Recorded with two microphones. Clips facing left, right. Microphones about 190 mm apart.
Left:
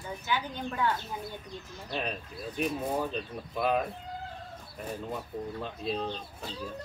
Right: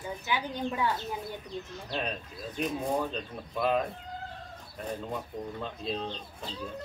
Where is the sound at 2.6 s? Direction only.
5° left (ahead or behind).